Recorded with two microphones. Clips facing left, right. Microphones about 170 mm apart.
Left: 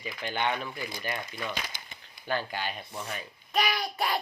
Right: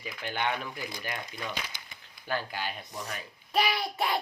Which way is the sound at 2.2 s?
5° right (ahead or behind).